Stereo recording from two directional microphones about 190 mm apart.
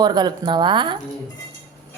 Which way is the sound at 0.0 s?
20° right (ahead or behind).